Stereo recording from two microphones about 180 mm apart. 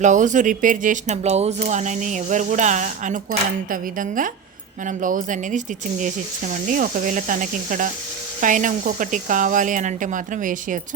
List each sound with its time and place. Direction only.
0.0 s a woman's voice: 45° right (ahead or behind)